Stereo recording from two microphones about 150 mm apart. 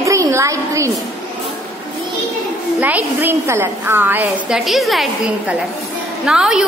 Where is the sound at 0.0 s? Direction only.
20° right (ahead or behind).